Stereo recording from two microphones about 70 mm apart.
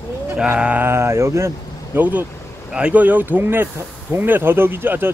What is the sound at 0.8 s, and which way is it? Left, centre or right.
Speech, right.